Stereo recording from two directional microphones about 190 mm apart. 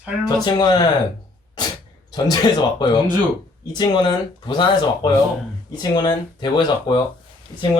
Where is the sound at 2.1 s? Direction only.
20° left (ahead or behind).